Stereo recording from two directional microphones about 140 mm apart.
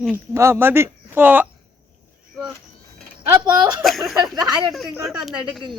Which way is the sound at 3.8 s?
Centre (ahead or behind).